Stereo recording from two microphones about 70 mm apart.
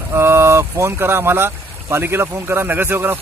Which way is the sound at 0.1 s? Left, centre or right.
Right.